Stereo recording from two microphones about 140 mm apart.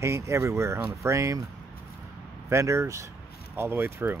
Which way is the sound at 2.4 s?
20° right (ahead or behind).